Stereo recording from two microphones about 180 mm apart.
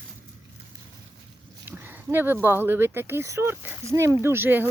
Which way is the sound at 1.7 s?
10° right (ahead or behind).